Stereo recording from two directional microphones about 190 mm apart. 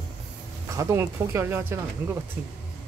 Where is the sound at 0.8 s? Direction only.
15° right (ahead or behind).